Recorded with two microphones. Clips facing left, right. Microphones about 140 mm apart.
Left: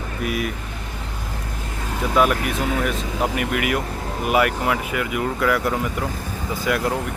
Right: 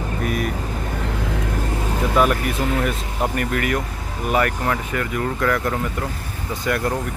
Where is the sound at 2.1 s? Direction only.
Centre (ahead or behind).